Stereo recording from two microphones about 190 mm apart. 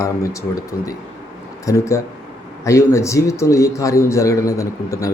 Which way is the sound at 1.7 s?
15° left (ahead or behind).